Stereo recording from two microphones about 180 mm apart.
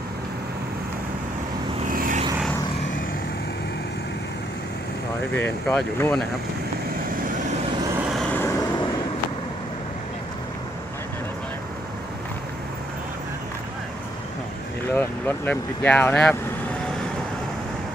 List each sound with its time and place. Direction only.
1.9 s vehicle: 50° right (ahead or behind)
5.3 s speech: 5° left (ahead or behind)
8.4 s vehicle: 15° left (ahead or behind)
14.8 s speech: 10° left (ahead or behind)